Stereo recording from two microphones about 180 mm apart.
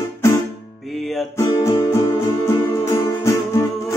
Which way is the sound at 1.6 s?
15° left (ahead or behind).